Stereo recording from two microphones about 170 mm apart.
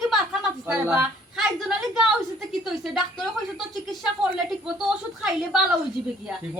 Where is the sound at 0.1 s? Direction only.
Centre (ahead or behind).